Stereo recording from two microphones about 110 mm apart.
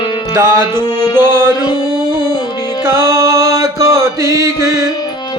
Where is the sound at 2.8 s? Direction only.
25° right (ahead or behind).